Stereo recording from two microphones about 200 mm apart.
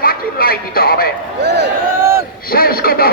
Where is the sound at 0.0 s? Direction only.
45° left (ahead or behind).